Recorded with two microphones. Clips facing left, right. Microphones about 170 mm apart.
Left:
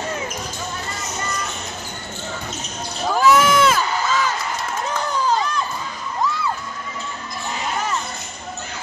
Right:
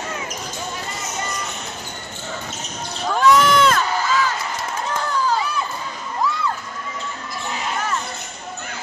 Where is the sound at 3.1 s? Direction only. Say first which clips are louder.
Even; 5° left (ahead or behind).